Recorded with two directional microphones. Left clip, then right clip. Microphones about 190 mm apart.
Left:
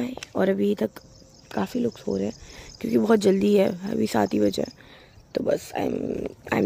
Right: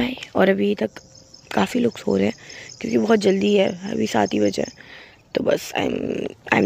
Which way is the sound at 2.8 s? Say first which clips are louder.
Right 2 dB; 5° left (ahead or behind).